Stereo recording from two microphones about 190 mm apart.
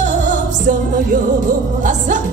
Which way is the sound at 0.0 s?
40° right (ahead or behind).